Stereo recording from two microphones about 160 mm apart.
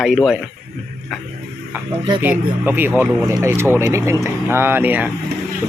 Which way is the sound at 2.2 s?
10° right (ahead or behind).